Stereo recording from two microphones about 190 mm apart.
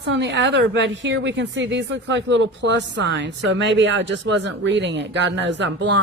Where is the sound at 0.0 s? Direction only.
70° right (ahead or behind).